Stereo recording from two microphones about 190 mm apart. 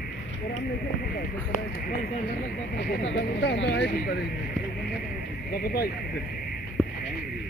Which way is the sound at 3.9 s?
45° left (ahead or behind).